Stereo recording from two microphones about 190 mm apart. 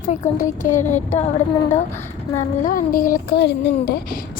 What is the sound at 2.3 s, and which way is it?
Speech, 45° left (ahead or behind).